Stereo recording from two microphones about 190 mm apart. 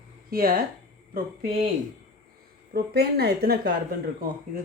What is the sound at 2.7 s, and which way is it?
Speech, 55° right (ahead or behind).